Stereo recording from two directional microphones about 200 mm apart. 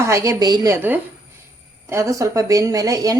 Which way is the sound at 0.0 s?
15° right (ahead or behind).